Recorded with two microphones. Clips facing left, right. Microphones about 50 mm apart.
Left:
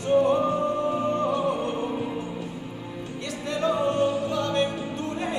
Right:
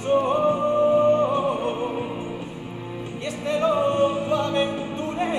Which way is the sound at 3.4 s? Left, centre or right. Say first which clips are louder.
Right 4 dB; right.